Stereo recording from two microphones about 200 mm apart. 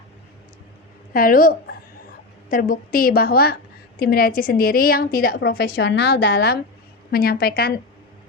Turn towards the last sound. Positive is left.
turn(degrees=50)  # may be behind; listen again after turning